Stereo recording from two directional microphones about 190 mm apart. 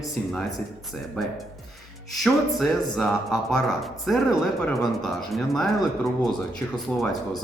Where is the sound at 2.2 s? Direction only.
Centre (ahead or behind).